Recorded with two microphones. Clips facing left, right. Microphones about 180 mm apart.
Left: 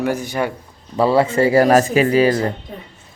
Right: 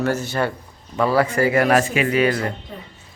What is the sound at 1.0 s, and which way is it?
Speech, 25° left (ahead or behind).